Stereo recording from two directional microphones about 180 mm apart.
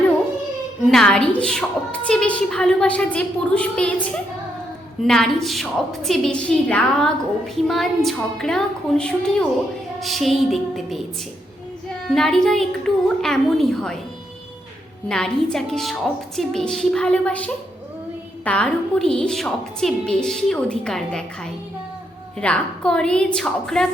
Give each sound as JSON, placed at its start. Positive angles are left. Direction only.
{"t": 0.9, "sound": "a woman's voice", "side_deg": 5}
{"t": 5.0, "sound": "a woman's voice", "side_deg": 0}
{"t": 12.0, "sound": "a woman's voice", "side_deg": 0}
{"t": 15.1, "sound": "a woman's voice", "side_deg": 5}